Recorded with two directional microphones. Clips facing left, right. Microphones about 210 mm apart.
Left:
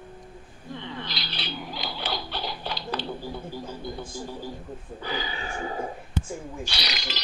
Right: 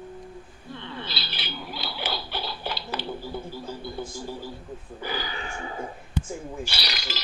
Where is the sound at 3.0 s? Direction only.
20° left (ahead or behind).